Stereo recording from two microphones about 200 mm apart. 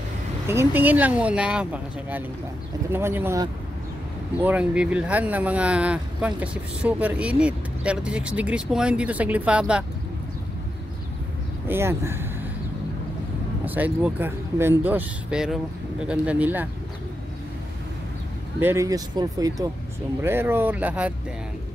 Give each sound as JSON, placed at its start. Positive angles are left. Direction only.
{"t": 0.5, "sound": "speech", "side_deg": -10}
{"t": 11.6, "sound": "speech", "side_deg": -10}
{"t": 13.7, "sound": "speech", "side_deg": -10}
{"t": 18.6, "sound": "speech", "side_deg": -15}